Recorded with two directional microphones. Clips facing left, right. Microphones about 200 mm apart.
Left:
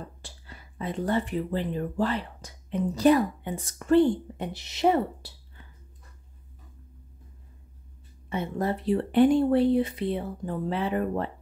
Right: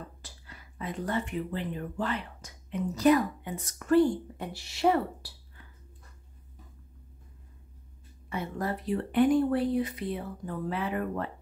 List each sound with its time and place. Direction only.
0.2 s speech: 30° left (ahead or behind)
8.3 s speech: 25° left (ahead or behind)